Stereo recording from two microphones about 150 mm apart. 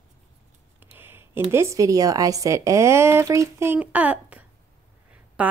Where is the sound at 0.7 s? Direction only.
15° right (ahead or behind).